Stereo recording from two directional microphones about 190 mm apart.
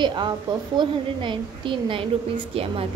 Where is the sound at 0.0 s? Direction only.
25° right (ahead or behind).